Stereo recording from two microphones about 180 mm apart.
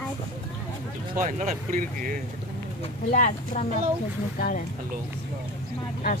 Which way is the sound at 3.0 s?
45° left (ahead or behind).